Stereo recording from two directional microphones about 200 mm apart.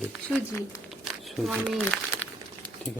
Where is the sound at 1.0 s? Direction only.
Centre (ahead or behind).